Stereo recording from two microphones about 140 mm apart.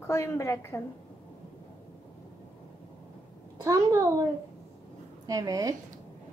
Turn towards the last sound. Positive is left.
turn(degrees=-25)  # may be behind; listen again after turning